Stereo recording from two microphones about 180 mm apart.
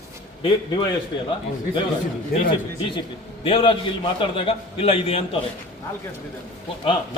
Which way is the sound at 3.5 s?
30° left (ahead or behind).